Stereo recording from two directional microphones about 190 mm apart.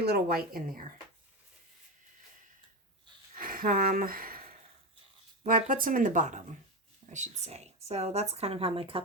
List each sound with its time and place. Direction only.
0.0 s speech: 55° right (ahead or behind)
3.3 s speech: 45° right (ahead or behind)
5.5 s speech: 45° right (ahead or behind); by 9.0 s 30° right (ahead or behind)